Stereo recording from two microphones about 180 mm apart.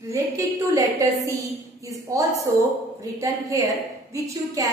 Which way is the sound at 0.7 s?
15° right (ahead or behind).